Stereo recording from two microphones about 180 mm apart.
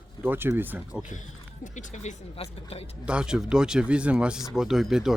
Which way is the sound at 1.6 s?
40° left (ahead or behind).